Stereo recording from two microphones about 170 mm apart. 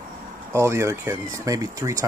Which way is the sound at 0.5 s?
15° right (ahead or behind).